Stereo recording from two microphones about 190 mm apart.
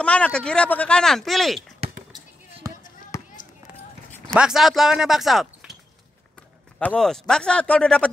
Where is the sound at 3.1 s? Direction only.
15° left (ahead or behind).